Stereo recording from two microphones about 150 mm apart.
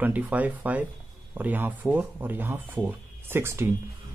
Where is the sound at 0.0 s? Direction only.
10° right (ahead or behind).